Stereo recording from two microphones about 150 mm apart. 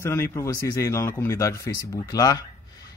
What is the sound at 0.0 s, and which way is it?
Speech, 20° left (ahead or behind).